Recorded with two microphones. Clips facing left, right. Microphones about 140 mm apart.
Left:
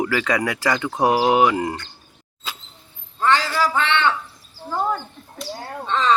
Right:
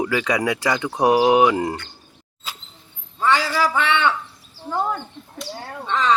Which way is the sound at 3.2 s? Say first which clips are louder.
Even; 10° right (ahead or behind).